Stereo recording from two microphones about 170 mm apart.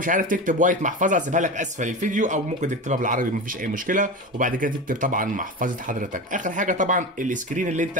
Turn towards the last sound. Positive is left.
turn(degrees=-50)  # may be behind; listen again after turning